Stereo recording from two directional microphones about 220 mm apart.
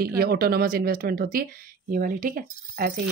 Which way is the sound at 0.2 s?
45° right (ahead or behind).